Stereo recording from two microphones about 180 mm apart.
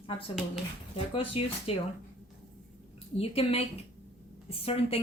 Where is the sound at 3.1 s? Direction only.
35° left (ahead or behind).